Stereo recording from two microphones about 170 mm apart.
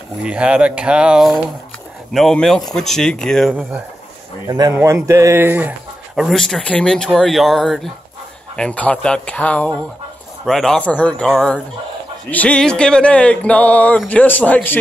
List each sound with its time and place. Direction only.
0.2 s speech: 5° right (ahead or behind)
4.5 s a man's voice: 20° right (ahead or behind)
6.1 s speech: centre (ahead or behind)